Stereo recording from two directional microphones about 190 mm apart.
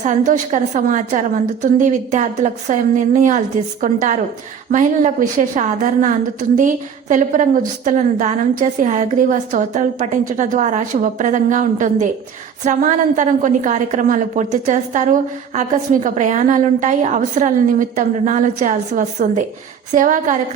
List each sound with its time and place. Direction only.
0.0 s a woman's voice: 40° right (ahead or behind)